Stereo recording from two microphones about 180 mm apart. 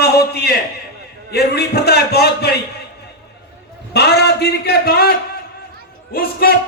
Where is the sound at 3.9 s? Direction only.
65° left (ahead or behind).